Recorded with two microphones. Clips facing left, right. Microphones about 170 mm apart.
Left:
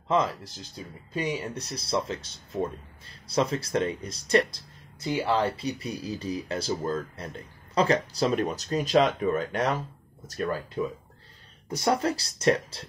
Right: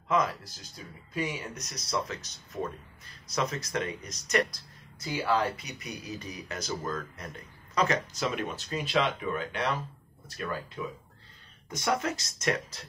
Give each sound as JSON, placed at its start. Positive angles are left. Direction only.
{"t": 0.1, "sound": "speech", "side_deg": 30}
{"t": 11.7, "sound": "speech", "side_deg": 35}